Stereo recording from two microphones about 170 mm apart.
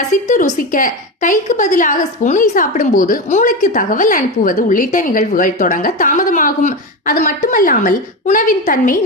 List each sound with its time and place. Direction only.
0.3 s a woman's voice: 45° left (ahead or behind)